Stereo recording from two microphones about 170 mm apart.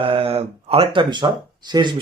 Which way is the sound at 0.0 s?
35° right (ahead or behind).